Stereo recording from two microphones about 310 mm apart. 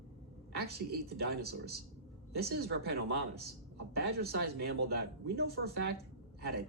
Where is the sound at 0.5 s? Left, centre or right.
Right.